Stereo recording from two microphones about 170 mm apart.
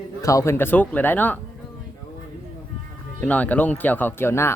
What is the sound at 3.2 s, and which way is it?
Speech, 10° left (ahead or behind).